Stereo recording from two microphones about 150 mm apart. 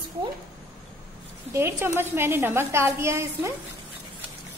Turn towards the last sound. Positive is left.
turn(degrees=-15)  # may be behind; listen again after turning